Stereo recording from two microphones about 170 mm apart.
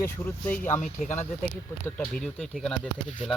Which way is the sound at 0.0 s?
10° left (ahead or behind).